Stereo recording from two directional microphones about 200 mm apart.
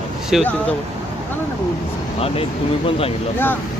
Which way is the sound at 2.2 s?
30° left (ahead or behind).